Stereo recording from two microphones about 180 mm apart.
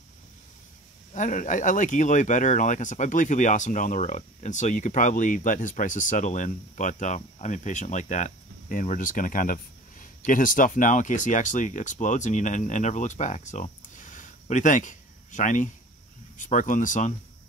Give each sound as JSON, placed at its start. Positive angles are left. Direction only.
{"t": 1.1, "sound": "speech", "side_deg": 45}